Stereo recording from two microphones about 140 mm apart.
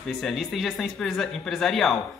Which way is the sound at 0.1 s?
Centre (ahead or behind).